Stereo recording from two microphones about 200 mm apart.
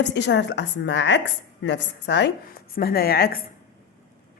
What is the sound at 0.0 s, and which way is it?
A woman's voice, 60° left (ahead or behind).